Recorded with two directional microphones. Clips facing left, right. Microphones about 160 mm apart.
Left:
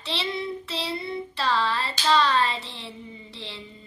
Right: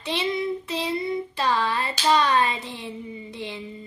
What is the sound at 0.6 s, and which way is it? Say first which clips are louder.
A child's voice: right 4 dB; 15° right (ahead or behind).